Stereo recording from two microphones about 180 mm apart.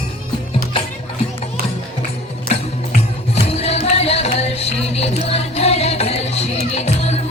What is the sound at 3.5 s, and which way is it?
Music, 35° left (ahead or behind).